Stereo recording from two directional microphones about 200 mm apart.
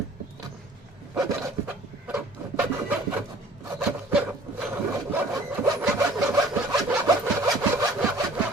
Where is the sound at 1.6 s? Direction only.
5° right (ahead or behind).